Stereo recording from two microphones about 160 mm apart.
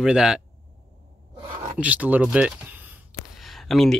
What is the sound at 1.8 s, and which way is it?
Speech, 10° right (ahead or behind).